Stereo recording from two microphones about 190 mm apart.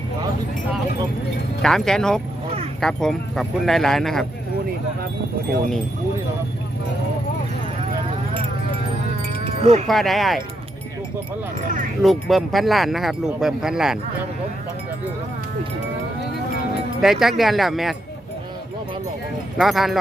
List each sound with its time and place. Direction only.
1.6 s speech: centre (ahead or behind)
9.4 s wind chime: 35° right (ahead or behind)
9.8 s speech: centre (ahead or behind)
12.0 s speech: centre (ahead or behind)
17.0 s speech: centre (ahead or behind)
19.5 s speech: centre (ahead or behind)